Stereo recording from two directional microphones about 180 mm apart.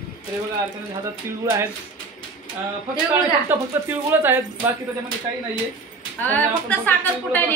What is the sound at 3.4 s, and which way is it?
Speech, 10° right (ahead or behind).